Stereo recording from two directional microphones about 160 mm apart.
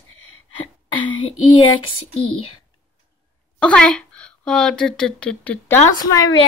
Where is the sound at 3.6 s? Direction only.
10° left (ahead or behind).